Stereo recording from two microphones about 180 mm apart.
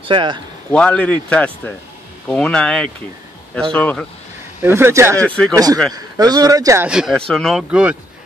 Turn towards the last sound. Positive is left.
turn(degrees=-5)  # may be behind; listen again after turning